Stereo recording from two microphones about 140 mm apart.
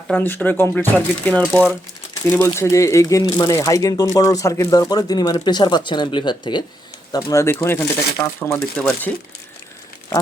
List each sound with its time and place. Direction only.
0.1 s speech: 10° left (ahead or behind)